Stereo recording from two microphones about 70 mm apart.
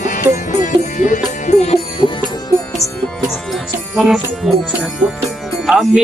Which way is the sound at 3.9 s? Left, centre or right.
Centre.